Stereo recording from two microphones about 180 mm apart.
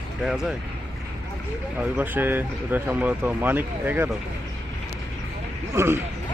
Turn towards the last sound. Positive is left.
turn(degrees=-15)  # may be behind; listen again after turning